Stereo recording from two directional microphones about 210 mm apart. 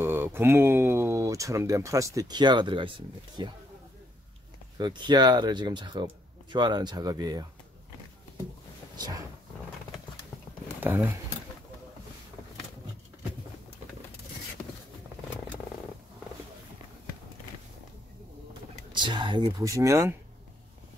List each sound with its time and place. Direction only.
0.0 s speech: 10° right (ahead or behind)
4.7 s speech: 20° right (ahead or behind)
10.8 s speech: 10° right (ahead or behind)
14.6 s a sound: 10° left (ahead or behind)
18.9 s speech: 20° right (ahead or behind)